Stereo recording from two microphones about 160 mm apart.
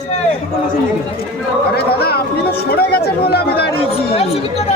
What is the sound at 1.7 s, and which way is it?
Speech, 80° left.